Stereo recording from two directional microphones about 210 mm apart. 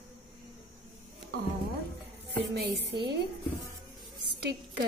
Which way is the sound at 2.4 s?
50° right (ahead or behind).